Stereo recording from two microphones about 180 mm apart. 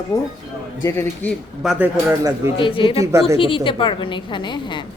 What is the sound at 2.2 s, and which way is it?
Speech, 15° right (ahead or behind).